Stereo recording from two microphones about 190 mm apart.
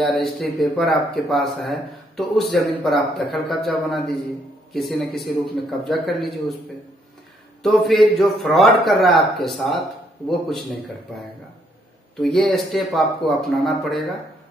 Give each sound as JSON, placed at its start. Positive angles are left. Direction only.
{"t": 0.0, "sound": "speech", "side_deg": 0}
{"t": 7.6, "sound": "speech", "side_deg": 0}
{"t": 12.2, "sound": "speech", "side_deg": 0}